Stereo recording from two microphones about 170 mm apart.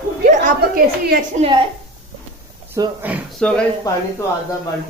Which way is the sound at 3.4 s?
5° left (ahead or behind).